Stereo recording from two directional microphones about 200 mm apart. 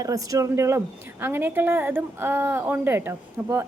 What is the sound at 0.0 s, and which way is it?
A woman's voice, 15° right (ahead or behind).